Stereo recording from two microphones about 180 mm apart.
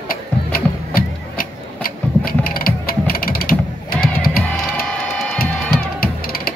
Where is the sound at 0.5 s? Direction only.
55° left (ahead or behind).